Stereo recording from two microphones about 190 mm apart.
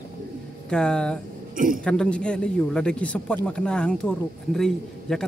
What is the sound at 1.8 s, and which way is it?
A man's voice, 5° left (ahead or behind).